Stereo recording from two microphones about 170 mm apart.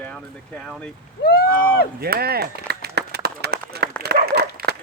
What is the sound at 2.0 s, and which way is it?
Run, 65° right (ahead or behind).